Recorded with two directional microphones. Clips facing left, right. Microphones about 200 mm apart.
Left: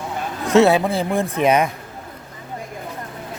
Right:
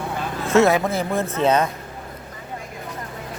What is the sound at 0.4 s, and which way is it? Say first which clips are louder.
Speech: left 2 dB; 15° left (ahead or behind).